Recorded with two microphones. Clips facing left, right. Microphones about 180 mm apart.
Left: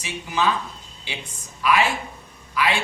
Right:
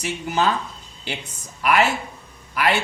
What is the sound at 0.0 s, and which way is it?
Speech, 55° right (ahead or behind).